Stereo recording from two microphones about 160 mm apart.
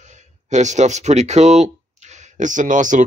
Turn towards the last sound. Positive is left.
turn(degrees=-50)  # may be behind; listen again after turning